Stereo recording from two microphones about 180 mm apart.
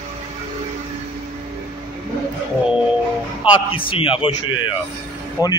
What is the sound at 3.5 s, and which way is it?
Speech, 30° left (ahead or behind).